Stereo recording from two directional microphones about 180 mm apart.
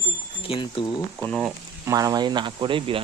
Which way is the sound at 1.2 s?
Centre (ahead or behind).